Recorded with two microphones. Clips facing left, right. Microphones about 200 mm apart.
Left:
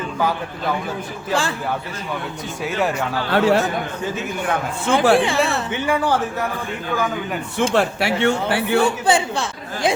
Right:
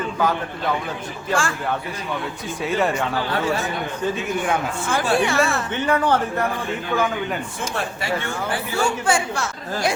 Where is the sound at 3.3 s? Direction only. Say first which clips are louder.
Left 9 dB; 70° left (ahead or behind).